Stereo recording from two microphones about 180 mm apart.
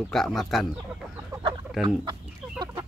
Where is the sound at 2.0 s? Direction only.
25° right (ahead or behind).